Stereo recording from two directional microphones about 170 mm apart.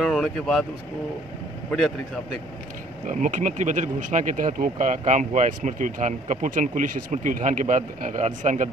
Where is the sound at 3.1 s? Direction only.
45° right (ahead or behind).